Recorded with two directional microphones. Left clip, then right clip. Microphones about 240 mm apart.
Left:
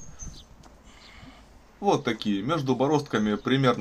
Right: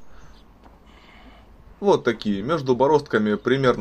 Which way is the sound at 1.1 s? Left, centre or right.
Centre.